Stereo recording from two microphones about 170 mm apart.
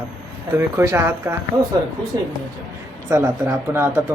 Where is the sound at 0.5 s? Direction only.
15° right (ahead or behind).